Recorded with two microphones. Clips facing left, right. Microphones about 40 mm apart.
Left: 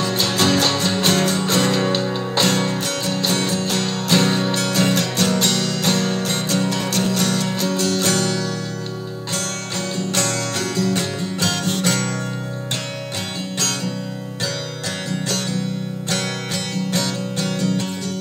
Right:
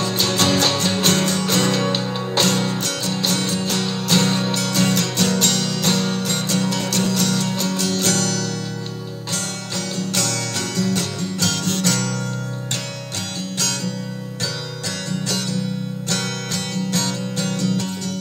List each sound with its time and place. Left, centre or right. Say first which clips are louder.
0.0 s music: left 1 dB; centre
1.1 s music: left 1 dB; centre
2.4 s music: left 2 dB; centre
4.6 s music: left 1 dB; left
7.1 s music: left 1 dB; left
7.5 s music: left 2 dB; centre
8.0 s music: left 1 dB; left
9.9 s music: left 2 dB; left
16.1 s music: left 1 dB; left